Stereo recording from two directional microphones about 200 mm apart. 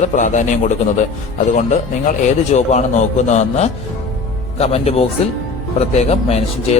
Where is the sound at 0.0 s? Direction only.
35° left (ahead or behind).